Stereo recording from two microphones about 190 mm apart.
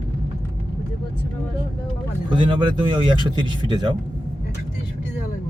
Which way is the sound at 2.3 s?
25° right (ahead or behind).